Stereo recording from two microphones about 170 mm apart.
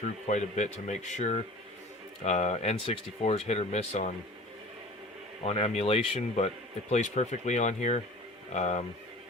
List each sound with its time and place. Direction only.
0.3 s speech: 45° left (ahead or behind)
5.5 s speech: 35° left (ahead or behind)